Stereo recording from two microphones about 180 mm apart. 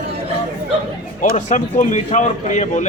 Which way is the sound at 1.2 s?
45° left (ahead or behind).